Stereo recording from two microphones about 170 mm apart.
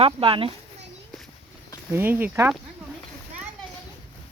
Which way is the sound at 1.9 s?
10° right (ahead or behind).